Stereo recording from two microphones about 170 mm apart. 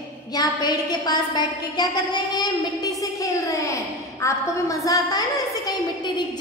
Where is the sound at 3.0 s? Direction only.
20° left (ahead or behind).